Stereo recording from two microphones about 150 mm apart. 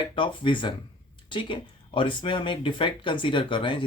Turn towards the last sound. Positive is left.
turn(degrees=35)  # may be behind; listen again after turning